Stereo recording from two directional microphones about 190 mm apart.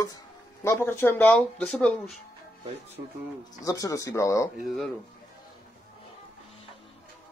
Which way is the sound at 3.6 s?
15° left (ahead or behind).